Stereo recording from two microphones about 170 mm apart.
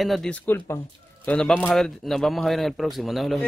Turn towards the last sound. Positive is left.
turn(degrees=0)  # may be behind; listen again after turning